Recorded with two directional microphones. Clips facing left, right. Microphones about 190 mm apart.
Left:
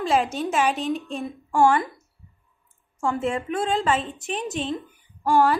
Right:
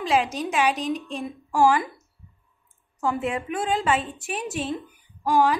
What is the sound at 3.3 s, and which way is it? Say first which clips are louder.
A woman's voice: left 1 dB; 5° right (ahead or behind).